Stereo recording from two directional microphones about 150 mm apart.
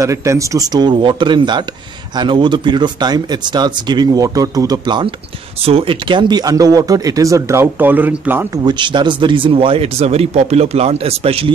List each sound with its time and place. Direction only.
0.0 s speech: 20° right (ahead or behind)
8.6 s speech: 30° right (ahead or behind)